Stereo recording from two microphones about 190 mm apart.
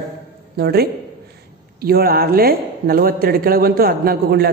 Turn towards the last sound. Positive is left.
turn(degrees=-55)  # may be behind; listen again after turning